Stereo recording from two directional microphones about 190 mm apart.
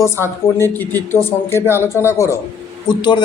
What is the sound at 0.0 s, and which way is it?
A man's voice, 15° left (ahead or behind).